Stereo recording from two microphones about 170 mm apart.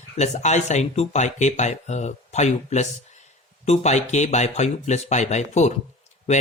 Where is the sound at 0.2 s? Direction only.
40° left (ahead or behind).